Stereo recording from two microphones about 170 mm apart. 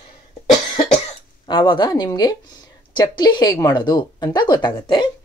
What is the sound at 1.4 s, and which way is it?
Speech, 30° left (ahead or behind).